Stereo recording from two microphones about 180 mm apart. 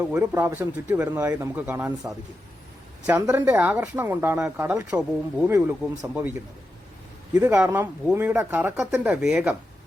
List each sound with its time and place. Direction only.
0.0 s speech: 10° right (ahead or behind)
3.1 s speech: 15° right (ahead or behind)
7.3 s speech: 10° right (ahead or behind)